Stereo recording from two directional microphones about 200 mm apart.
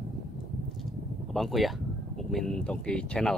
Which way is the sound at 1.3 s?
Centre (ahead or behind).